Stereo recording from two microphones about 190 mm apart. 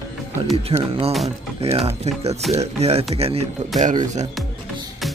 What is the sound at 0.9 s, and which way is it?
Speech, 30° right (ahead or behind).